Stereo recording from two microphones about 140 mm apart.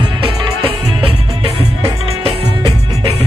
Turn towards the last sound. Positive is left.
turn(degrees=-40)  # may be behind; listen again after turning